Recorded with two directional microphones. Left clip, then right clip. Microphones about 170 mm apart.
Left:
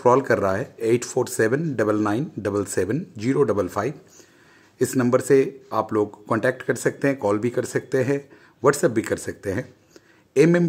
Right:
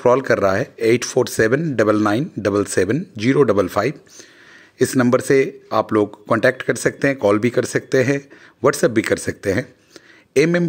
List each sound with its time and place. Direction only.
0.0 s speech: 15° right (ahead or behind)